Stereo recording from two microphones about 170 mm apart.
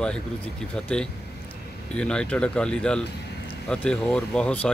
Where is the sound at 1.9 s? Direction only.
5° left (ahead or behind).